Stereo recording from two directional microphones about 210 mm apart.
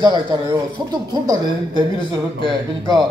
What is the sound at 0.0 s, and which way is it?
Speech, 20° right (ahead or behind).